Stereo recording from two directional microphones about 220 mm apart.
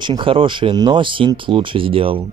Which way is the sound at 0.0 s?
20° right (ahead or behind).